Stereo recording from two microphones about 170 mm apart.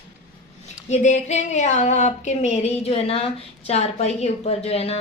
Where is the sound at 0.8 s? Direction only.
40° left (ahead or behind).